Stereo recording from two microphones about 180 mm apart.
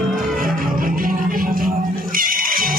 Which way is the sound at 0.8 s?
50° right (ahead or behind).